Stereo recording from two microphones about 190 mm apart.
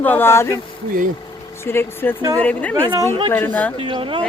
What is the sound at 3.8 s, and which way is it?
Speech, 25° right (ahead or behind).